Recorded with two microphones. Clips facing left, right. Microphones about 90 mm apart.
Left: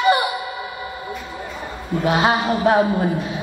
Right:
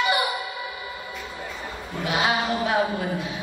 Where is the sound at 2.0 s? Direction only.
40° left (ahead or behind).